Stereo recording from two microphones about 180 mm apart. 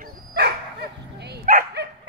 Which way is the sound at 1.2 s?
60° right (ahead or behind).